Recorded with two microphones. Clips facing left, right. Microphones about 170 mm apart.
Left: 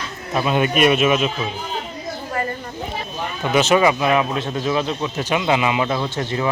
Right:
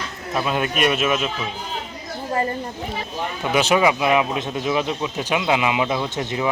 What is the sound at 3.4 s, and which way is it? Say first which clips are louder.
Speech: left 2 dB; 10° right (ahead or behind).